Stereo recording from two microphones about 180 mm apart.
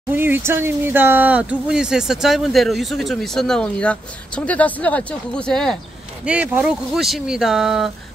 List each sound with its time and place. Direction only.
0.1 s speech: 10° right (ahead or behind); by 5.8 s 5° left (ahead or behind)
6.2 s speech: 10° right (ahead or behind)